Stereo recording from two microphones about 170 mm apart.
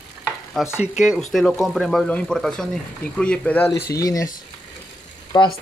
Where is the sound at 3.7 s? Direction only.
20° left (ahead or behind).